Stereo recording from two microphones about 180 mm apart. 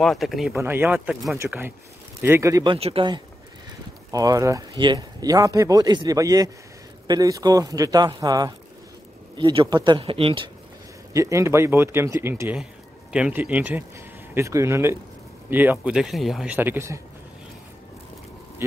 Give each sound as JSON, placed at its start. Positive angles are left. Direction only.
{"t": 0.0, "sound": "speech", "side_deg": 0}
{"t": 0.6, "sound": "speech", "side_deg": -10}
{"t": 4.1, "sound": "speech", "side_deg": -20}
{"t": 11.1, "sound": "speech", "side_deg": -15}
{"t": 18.6, "sound": "speech", "side_deg": -15}